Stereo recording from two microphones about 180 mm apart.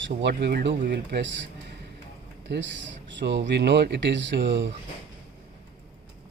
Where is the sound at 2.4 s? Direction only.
75° right (ahead or behind).